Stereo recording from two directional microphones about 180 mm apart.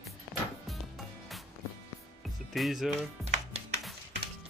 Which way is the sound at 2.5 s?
Centre (ahead or behind).